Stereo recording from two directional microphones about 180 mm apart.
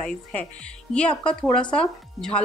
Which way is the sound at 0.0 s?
5° left (ahead or behind).